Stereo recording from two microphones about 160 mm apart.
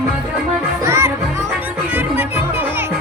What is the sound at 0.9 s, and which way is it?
Music, 15° right (ahead or behind).